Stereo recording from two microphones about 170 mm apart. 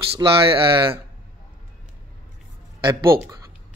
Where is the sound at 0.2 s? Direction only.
25° right (ahead or behind).